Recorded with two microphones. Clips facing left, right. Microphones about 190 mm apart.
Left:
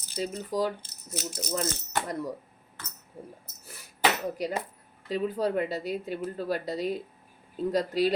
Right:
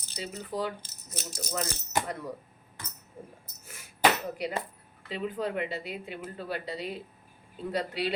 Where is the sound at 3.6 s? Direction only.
35° left (ahead or behind).